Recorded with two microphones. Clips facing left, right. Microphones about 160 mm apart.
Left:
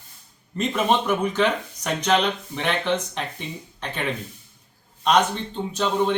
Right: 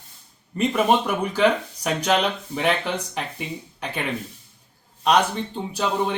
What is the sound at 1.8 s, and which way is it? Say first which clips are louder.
Speech: right 1 dB; 30° right (ahead or behind).